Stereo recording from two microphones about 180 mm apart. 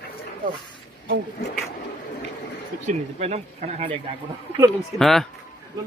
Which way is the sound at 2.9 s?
40° right (ahead or behind).